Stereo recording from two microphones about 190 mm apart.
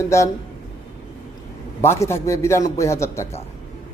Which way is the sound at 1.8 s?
15° left (ahead or behind).